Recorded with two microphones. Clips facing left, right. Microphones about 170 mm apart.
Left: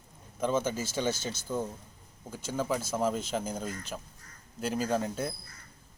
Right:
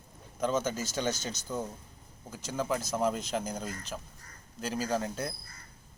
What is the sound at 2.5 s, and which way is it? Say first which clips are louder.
A man's voice: left 1 dB; 5° left (ahead or behind).